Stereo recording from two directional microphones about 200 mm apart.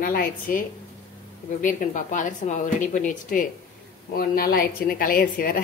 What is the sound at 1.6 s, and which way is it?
A woman's voice, 40° left (ahead or behind).